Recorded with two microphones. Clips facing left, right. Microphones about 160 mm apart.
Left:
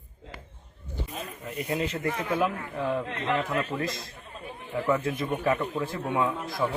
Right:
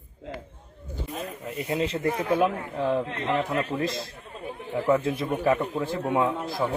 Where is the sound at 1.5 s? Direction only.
25° right (ahead or behind).